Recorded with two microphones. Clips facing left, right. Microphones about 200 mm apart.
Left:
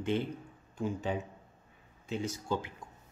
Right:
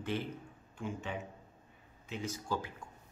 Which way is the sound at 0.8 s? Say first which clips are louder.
Left 6 dB; 35° left (ahead or behind).